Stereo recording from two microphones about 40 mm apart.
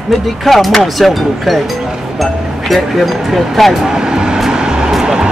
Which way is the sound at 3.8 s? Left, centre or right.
Centre.